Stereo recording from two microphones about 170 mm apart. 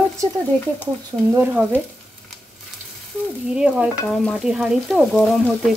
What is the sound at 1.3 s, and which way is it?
Speech, 10° right (ahead or behind).